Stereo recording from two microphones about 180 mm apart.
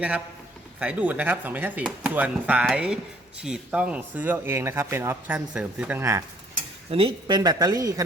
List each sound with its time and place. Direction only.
0.8 s speech: 5° right (ahead or behind)
6.9 s a woman's voice: 25° right (ahead or behind)